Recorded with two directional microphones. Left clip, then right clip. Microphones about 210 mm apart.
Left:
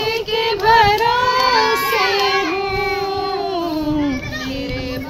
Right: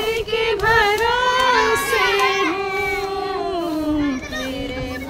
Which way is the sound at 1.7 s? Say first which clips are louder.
Left 1 dB; 40° right (ahead or behind).